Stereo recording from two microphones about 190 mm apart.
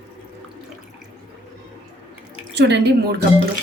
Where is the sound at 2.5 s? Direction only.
60° right (ahead or behind).